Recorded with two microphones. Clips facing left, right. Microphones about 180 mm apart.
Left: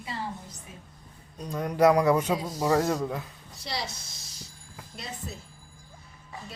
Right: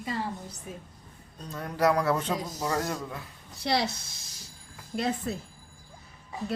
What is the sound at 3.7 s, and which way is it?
Speech, 60° right (ahead or behind).